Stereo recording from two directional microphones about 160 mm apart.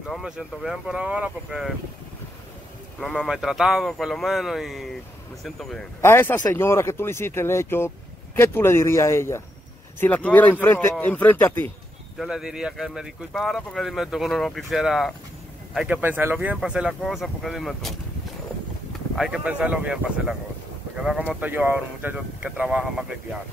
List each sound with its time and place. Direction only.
0.0 s speech: 5° right (ahead or behind)
3.0 s speech: centre (ahead or behind)
5.9 s speech: 15° left (ahead or behind)
12.2 s speech: 5° right (ahead or behind)
19.1 s speech: 5° right (ahead or behind)